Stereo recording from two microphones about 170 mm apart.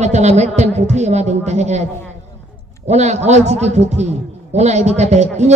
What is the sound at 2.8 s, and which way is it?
A man's voice, 40° right (ahead or behind).